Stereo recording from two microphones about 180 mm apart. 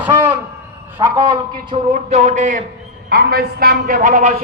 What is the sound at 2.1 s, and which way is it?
Speech, 40° right (ahead or behind).